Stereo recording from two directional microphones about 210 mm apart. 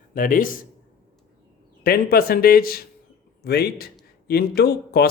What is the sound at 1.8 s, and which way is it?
Speech, 45° left (ahead or behind).